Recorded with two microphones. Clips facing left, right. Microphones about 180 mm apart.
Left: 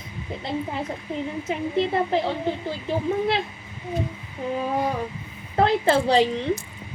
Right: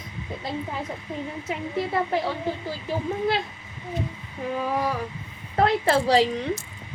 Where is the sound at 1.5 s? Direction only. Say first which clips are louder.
Left 3 dB; 25° left (ahead or behind).